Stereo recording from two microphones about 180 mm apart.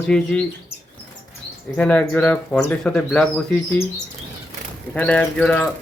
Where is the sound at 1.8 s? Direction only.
10° left (ahead or behind).